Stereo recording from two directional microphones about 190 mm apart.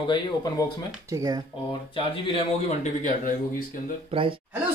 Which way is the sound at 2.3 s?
40° left (ahead or behind).